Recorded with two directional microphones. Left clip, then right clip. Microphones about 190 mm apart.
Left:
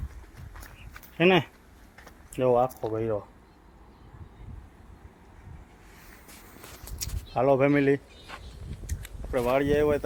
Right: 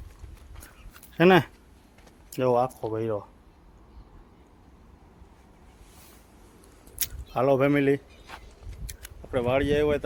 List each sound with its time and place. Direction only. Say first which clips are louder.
1.1 s speech: right 3 dB; 35° right (ahead or behind)
2.3 s speech: even; 15° right (ahead or behind)
7.3 s speech: even; 25° right (ahead or behind)